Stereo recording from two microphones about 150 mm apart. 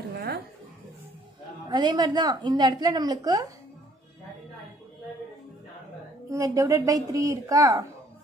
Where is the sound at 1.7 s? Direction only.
30° right (ahead or behind).